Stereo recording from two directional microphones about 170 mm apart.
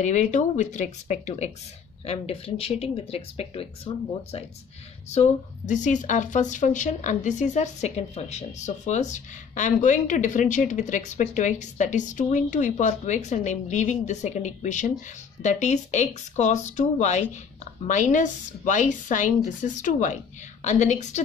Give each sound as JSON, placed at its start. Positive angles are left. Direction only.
{"t": 0.0, "sound": "speech", "side_deg": 45}
{"t": 5.7, "sound": "speech", "side_deg": 45}